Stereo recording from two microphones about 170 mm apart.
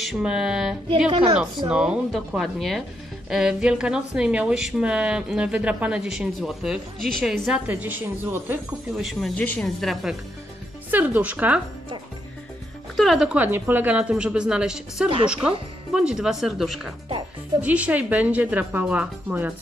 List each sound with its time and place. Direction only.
0.0 s a woman's voice: centre (ahead or behind)
0.8 s a woman's voice: 30° right (ahead or behind)
1.7 s a woman's voice: 5° right (ahead or behind)
10.9 s speech: 10° right (ahead or behind)
12.9 s a woman's voice: centre (ahead or behind)